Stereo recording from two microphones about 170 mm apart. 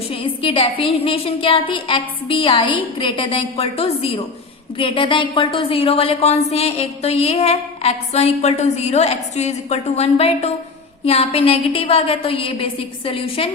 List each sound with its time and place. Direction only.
0.1 s a woman's voice: 35° left (ahead or behind)